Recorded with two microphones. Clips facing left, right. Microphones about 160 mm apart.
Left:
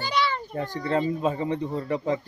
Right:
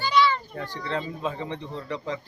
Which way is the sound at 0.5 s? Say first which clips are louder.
Left 5 dB; 45° left (ahead or behind).